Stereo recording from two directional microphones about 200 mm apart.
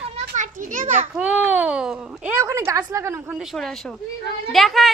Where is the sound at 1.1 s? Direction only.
5° right (ahead or behind).